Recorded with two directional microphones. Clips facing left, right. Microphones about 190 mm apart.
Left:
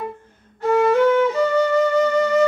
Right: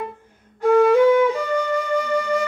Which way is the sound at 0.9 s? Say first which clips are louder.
Right 1 dB; 10° right (ahead or behind).